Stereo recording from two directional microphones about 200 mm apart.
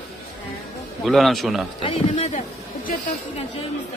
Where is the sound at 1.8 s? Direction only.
35° left (ahead or behind).